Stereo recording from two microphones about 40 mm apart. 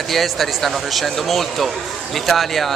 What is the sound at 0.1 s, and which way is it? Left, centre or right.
A man's voice, centre.